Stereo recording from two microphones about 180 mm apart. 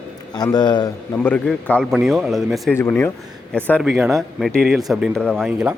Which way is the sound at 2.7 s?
15° left (ahead or behind).